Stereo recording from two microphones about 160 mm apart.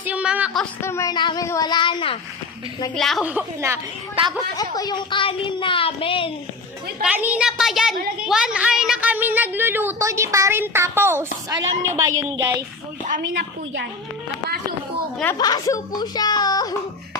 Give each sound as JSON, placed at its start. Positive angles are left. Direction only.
{"t": 0.0, "sound": "music", "side_deg": -10}
{"t": 0.8, "sound": "a woman's voice", "side_deg": 15}
{"t": 1.1, "sound": "a woman's voice", "side_deg": 30}
{"t": 2.9, "sound": "a child's voice", "side_deg": 0}
{"t": 3.2, "sound": "a woman's voice", "side_deg": -15}
{"t": 4.1, "sound": "a woman's voice", "side_deg": -30}
{"t": 4.5, "sound": "speech", "side_deg": 25}
{"t": 7.0, "sound": "a child's voice", "side_deg": -10}
{"t": 15.4, "sound": "a woman's voice", "side_deg": 25}